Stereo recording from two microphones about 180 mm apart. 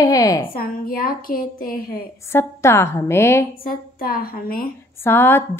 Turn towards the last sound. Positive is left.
turn(degrees=10)  # may be behind; listen again after turning